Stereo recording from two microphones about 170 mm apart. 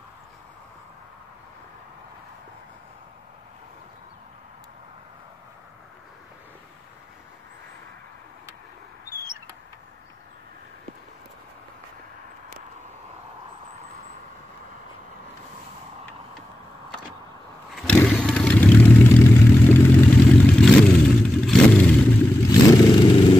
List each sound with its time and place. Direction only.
17.7 s vehicle: 5° left (ahead or behind)
22.5 s vehicle: 25° left (ahead or behind)